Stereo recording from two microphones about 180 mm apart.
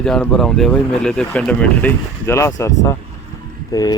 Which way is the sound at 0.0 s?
5° left (ahead or behind).